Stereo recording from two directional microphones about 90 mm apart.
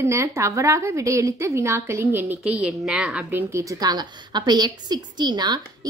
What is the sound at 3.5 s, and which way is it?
A woman's voice, 40° right (ahead or behind).